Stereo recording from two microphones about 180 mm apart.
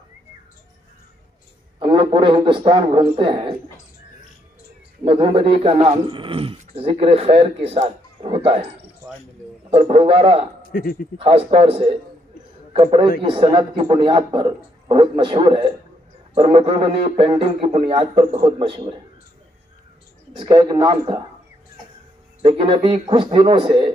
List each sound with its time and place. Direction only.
1.8 s a man's voice: 30° right (ahead or behind)
5.0 s speech: 30° right (ahead or behind)
9.7 s speech: 35° right (ahead or behind)
10.7 s a man's voice: 55° left (ahead or behind)
11.1 s a man's voice: 30° right (ahead or behind)
20.3 s a man's voice: 25° right (ahead or behind)
22.4 s a man's voice: 30° right (ahead or behind)